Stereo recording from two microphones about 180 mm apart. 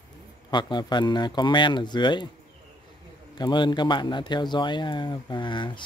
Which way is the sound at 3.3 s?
25° left (ahead or behind).